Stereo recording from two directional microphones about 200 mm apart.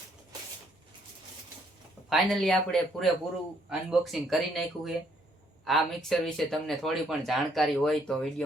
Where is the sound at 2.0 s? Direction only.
Centre (ahead or behind).